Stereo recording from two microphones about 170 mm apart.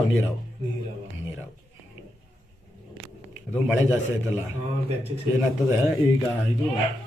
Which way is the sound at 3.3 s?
10° right (ahead or behind).